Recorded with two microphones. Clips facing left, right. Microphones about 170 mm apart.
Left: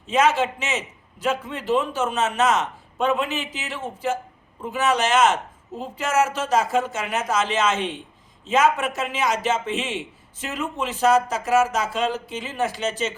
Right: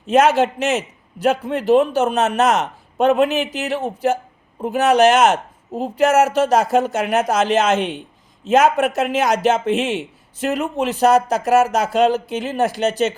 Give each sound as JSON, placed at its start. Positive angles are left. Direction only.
{"t": 0.1, "sound": "a man's voice", "side_deg": -70}